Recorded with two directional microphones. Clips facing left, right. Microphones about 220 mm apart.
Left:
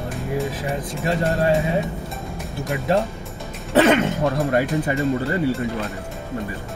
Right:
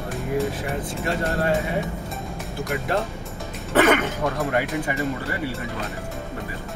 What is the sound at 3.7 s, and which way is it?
Speech, 30° left (ahead or behind).